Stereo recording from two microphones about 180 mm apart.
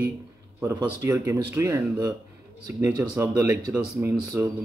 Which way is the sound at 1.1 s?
15° right (ahead or behind).